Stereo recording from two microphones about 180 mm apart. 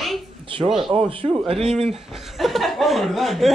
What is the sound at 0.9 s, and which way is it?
Speech, 30° right (ahead or behind).